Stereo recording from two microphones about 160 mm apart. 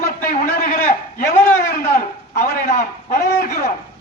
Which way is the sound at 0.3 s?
55° left (ahead or behind).